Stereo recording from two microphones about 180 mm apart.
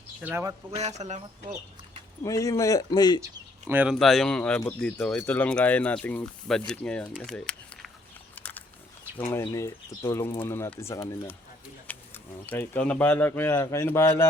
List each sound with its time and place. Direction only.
0.2 s speech: 10° right (ahead or behind)
0.8 s speech: 40° right (ahead or behind)
2.2 s speech: 20° left (ahead or behind)
3.7 s speech: 10° right (ahead or behind)
3.9 s speech: centre (ahead or behind)
7.3 s a sound: 5° left (ahead or behind)
8.4 s wild animals: 10° left (ahead or behind)
9.3 s speech: 20° left (ahead or behind)